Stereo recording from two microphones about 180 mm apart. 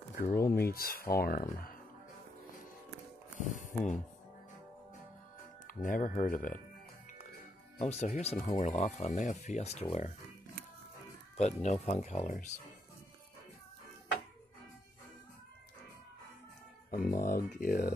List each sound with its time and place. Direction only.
0.1 s a sound: 55° left (ahead or behind)
0.6 s speech: 60° left (ahead or behind)
3.3 s music: 45° left (ahead or behind)
5.7 s speech: 50° left (ahead or behind)
7.8 s speech: 40° left (ahead or behind)
11.3 s speech: 40° left (ahead or behind)
16.9 s speech: 50° left (ahead or behind)